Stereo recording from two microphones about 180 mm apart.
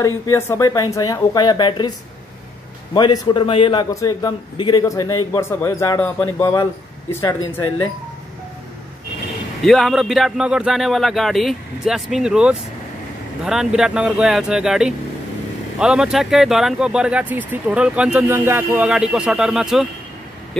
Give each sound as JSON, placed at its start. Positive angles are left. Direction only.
{"t": 0.0, "sound": "a man's voice", "side_deg": 15}
{"t": 9.7, "sound": "speech", "side_deg": 0}